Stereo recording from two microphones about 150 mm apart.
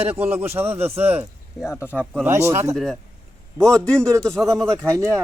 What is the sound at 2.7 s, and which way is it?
Speech, centre (ahead or behind).